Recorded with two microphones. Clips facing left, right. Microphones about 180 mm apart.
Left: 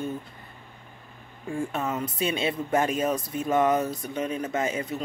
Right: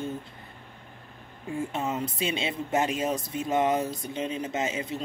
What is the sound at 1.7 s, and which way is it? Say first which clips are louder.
Speech: left 1 dB; 30° right (ahead or behind).